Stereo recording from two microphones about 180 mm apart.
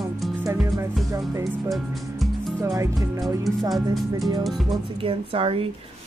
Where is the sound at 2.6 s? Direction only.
15° right (ahead or behind).